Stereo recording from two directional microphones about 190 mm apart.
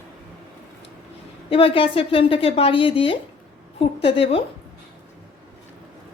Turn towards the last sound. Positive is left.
turn(degrees=30)  # may be behind; listen again after turning